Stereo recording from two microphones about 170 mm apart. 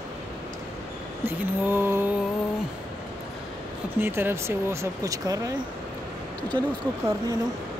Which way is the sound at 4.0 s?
10° right (ahead or behind).